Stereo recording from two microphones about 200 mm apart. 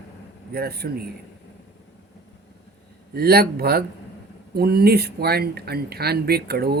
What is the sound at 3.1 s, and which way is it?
Speech, 50° right (ahead or behind).